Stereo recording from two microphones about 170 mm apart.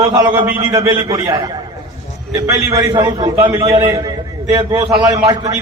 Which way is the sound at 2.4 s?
20° right (ahead or behind).